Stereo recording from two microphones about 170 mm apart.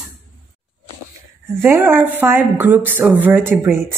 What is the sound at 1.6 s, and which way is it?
Speech, 15° right (ahead or behind).